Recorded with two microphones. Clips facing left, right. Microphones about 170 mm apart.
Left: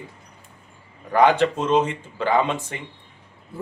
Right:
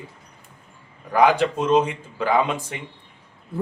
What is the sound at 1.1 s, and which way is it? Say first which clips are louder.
A man's voice: left 1 dB; 10° right (ahead or behind).